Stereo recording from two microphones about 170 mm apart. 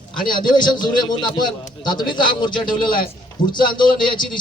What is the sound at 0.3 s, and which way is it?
A man's voice, 25° left (ahead or behind).